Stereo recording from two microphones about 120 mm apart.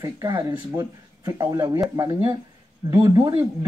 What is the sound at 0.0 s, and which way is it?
Speech, 35° right (ahead or behind).